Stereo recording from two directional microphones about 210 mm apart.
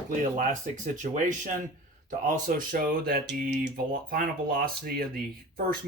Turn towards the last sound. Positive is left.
turn(degrees=-45)  # may be behind; listen again after turning